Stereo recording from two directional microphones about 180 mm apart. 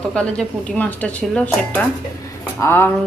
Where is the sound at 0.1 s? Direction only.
5° left (ahead or behind).